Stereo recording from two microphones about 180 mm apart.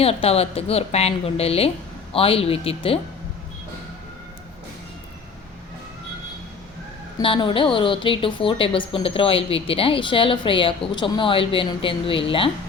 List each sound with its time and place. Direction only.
0.0 s a woman's voice: 35° left (ahead or behind)
7.2 s a woman's voice: 30° left (ahead or behind)